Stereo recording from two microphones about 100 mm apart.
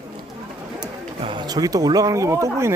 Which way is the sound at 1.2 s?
60° right (ahead or behind).